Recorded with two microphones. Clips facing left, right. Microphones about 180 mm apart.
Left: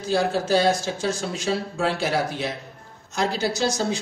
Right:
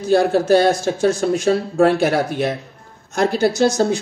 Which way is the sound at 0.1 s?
55° right (ahead or behind).